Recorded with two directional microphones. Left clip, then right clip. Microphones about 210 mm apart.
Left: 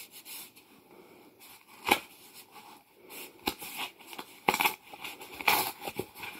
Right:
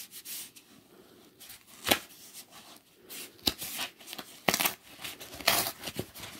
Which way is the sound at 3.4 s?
50° right (ahead or behind).